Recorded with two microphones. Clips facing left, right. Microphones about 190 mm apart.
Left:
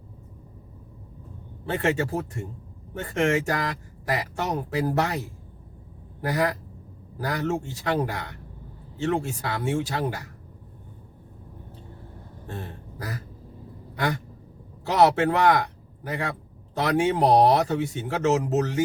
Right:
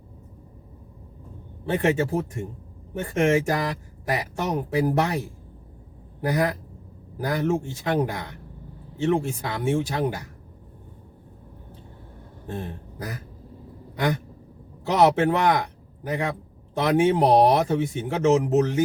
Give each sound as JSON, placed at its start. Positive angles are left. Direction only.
{"t": 1.7, "sound": "speech", "side_deg": -20}
{"t": 12.5, "sound": "a sound", "side_deg": -20}
{"t": 14.8, "sound": "a man's voice", "side_deg": -20}